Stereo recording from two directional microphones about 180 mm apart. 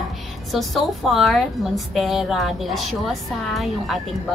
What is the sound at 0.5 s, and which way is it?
Speech, centre (ahead or behind).